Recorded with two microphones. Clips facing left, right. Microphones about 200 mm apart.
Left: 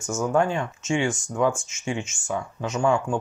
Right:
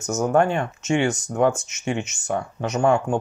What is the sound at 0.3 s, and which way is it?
Speech, 65° right (ahead or behind).